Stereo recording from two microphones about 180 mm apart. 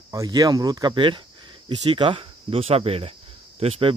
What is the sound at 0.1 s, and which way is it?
Speech, 20° right (ahead or behind).